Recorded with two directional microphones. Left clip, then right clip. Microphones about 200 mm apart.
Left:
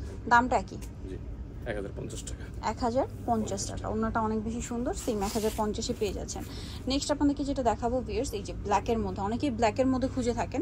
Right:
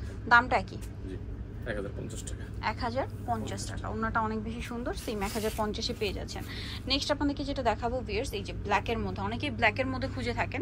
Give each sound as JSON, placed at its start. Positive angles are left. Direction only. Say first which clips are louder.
{"t": 0.3, "sound": "a woman's voice", "louder": "even", "side_deg": 15}
{"t": 2.6, "sound": "a woman's voice", "louder": "left 3 dB", "side_deg": 20}